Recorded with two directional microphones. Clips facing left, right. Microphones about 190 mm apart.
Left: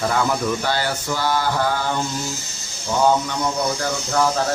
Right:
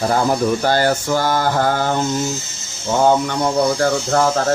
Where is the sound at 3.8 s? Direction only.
50° right (ahead or behind).